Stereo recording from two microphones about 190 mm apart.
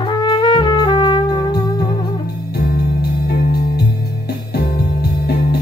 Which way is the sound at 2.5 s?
55° left (ahead or behind).